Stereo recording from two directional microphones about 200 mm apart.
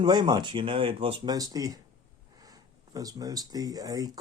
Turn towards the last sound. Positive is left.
turn(degrees=-20)  # may be behind; listen again after turning